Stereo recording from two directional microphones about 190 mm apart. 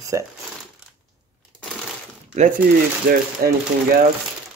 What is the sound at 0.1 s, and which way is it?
Speech, 15° right (ahead or behind).